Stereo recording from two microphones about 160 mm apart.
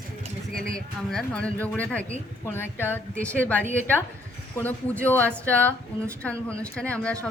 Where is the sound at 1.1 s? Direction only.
5° left (ahead or behind).